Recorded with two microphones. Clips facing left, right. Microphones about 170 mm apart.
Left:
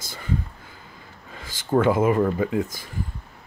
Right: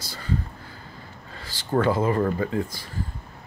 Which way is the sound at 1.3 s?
15° left (ahead or behind).